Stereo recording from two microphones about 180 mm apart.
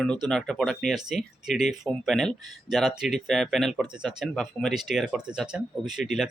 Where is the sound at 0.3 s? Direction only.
5° left (ahead or behind).